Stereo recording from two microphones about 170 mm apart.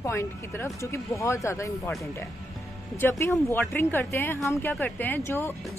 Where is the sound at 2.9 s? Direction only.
15° left (ahead or behind).